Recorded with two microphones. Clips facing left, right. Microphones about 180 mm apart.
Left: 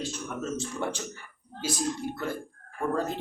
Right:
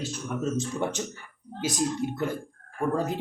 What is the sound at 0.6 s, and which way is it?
Speech, 20° right (ahead or behind).